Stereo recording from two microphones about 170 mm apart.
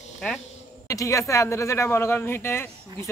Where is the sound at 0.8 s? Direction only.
20° left (ahead or behind).